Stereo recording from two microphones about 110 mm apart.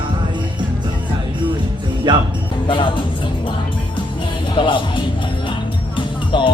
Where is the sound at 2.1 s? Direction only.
45° right (ahead or behind).